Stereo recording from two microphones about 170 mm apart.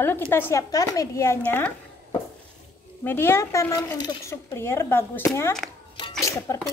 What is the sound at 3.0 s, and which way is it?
A child's voice, 15° left (ahead or behind).